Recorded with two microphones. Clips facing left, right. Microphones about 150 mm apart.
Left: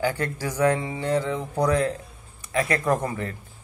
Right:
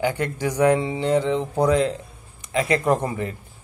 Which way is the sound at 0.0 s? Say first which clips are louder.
Right 3 dB; 20° right (ahead or behind).